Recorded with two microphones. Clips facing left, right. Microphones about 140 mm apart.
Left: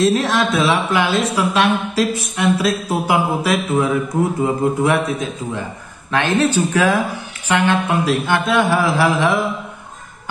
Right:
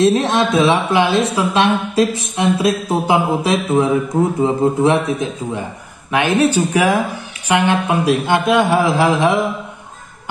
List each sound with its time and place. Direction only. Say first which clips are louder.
0.0 s a woman's voice: right 2 dB; 20° right (ahead or behind)